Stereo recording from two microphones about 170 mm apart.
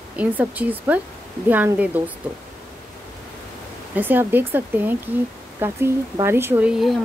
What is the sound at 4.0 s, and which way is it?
Speech, 10° right (ahead or behind).